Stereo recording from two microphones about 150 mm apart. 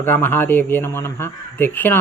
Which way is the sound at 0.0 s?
15° left (ahead or behind).